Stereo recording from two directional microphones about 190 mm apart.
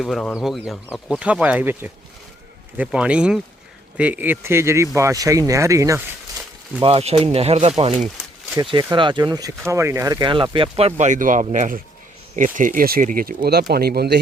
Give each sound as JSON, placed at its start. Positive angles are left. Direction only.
{"t": 0.0, "sound": "speech", "side_deg": 0}
{"t": 6.8, "sound": "speech", "side_deg": -30}
{"t": 8.5, "sound": "speech", "side_deg": -25}